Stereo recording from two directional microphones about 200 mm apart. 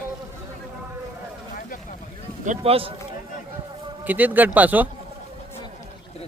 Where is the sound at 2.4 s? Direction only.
35° right (ahead or behind).